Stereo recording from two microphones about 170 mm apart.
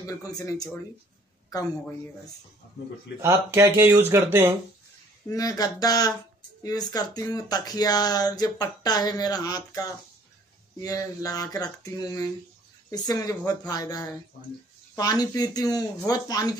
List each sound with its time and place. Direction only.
0.0 s speech: 20° left (ahead or behind)
3.2 s speech: 15° right (ahead or behind)
5.3 s speech: 20° left (ahead or behind)